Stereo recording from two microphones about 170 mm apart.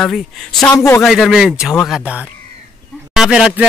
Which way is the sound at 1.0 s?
Centre (ahead or behind).